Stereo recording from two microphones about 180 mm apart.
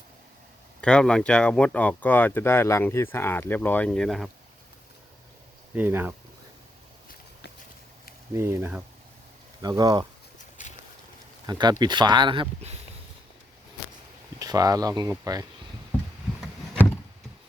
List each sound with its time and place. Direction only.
0.8 s speech: 5° left (ahead or behind)
5.7 s speech: 10° right (ahead or behind)
8.3 s speech: 15° right (ahead or behind)
11.4 s speech: 25° right (ahead or behind)
14.3 s speech: 20° right (ahead or behind)